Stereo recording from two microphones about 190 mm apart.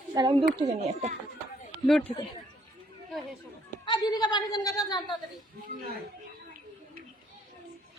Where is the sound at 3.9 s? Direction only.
20° left (ahead or behind).